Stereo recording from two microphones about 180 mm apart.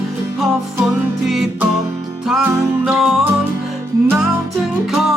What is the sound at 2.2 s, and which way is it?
Music, 5° right (ahead or behind).